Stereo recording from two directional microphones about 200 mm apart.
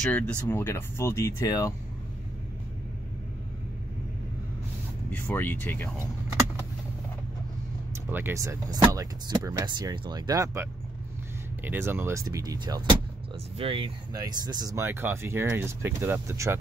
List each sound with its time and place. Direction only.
0.0 s speech: 10° left (ahead or behind)
5.3 s speech: 10° left (ahead or behind)
7.9 s speech: 10° right (ahead or behind)